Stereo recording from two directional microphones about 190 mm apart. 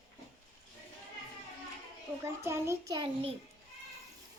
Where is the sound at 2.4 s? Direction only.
15° right (ahead or behind).